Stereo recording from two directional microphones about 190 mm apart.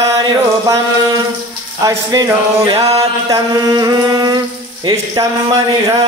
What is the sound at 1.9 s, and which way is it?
Speech, 20° right (ahead or behind).